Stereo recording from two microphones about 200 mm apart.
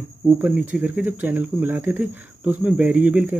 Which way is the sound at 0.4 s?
5° right (ahead or behind).